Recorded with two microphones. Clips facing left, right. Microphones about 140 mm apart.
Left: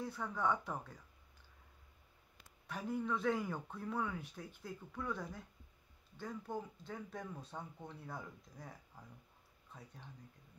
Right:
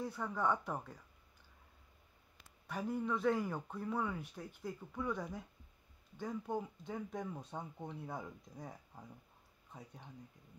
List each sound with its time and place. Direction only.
0.0 s speech: 10° right (ahead or behind)
2.7 s speech: 5° right (ahead or behind)